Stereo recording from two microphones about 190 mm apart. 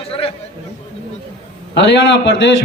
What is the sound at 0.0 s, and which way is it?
Chatter, 30° left (ahead or behind).